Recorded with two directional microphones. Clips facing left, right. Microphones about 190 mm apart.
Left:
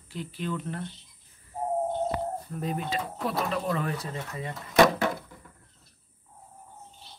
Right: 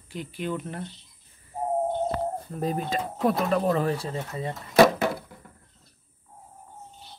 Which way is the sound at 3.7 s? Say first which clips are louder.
Right 5 dB; 30° right (ahead or behind).